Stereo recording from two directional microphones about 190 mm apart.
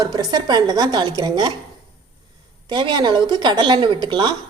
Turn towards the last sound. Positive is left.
turn(degrees=-25)  # may be behind; listen again after turning